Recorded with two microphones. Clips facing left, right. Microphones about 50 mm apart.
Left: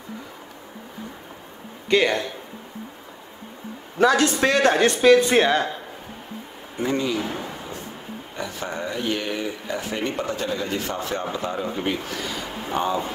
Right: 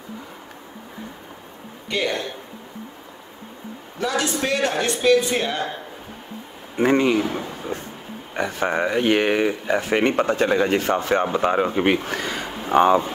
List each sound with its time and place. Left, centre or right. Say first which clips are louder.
1.9 s speech: left 5 dB; left
4.0 s a man's voice: left 5 dB; left
6.8 s speech: right 6 dB; right
7.3 s a sound: right 4 dB; right
8.4 s speech: right 8 dB; right